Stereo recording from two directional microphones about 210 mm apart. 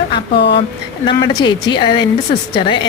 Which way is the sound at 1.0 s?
20° left (ahead or behind).